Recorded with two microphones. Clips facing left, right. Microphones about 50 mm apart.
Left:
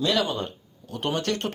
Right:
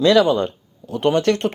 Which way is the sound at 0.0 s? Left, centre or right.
Right.